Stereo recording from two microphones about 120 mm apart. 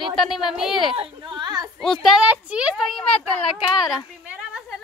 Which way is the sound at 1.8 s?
5° left (ahead or behind).